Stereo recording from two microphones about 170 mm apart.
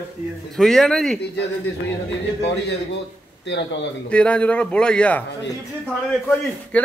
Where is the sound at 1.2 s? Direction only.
85° left.